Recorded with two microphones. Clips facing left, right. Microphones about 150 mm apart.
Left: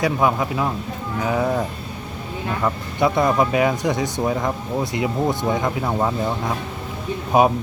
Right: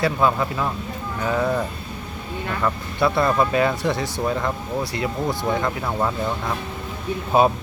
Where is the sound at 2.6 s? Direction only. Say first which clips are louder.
Left 1 dB; 15° left (ahead or behind).